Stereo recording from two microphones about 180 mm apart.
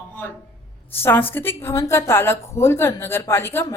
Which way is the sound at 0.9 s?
10° left (ahead or behind).